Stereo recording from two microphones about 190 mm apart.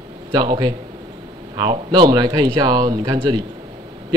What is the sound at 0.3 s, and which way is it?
A man's voice, 20° right (ahead or behind).